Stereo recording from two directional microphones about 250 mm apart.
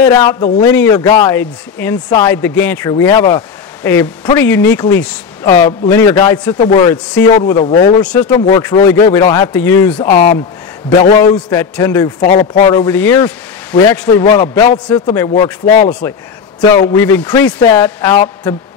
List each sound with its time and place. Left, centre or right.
0.0 s speech: centre
8.0 s speech: centre
8.3 s speech: left
9.9 s speech: left
11.3 s speech: centre
12.3 s speech: left; by 15.2 s centre
15.6 s a man's voice: left
16.7 s speech: centre